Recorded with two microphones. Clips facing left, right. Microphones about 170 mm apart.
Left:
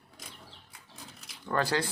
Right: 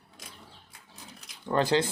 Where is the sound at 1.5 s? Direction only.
20° right (ahead or behind).